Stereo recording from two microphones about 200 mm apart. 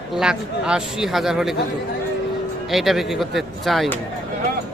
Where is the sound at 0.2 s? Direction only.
5° right (ahead or behind).